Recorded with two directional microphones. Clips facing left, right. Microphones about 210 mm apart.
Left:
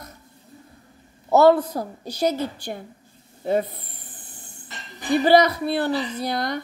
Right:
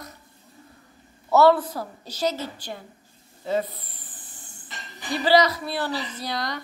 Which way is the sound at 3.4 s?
55° left (ahead or behind).